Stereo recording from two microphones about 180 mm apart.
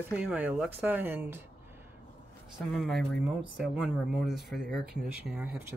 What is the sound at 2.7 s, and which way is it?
Speech, centre (ahead or behind).